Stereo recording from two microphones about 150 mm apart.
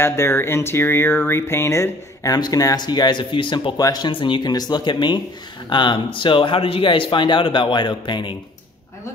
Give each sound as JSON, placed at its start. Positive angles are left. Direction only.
{"t": 0.0, "sound": "speech", "side_deg": 15}